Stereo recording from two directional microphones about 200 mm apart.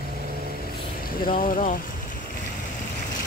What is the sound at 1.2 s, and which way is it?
Speech, 45° left (ahead or behind).